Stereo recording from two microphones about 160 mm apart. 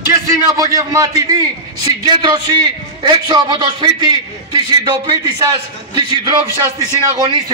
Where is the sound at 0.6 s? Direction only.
20° right (ahead or behind).